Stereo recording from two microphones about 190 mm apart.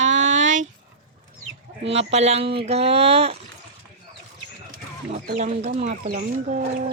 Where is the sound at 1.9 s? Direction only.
35° right (ahead or behind).